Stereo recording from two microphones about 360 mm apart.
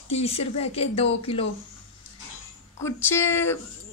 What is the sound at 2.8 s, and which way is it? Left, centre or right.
Speech, centre.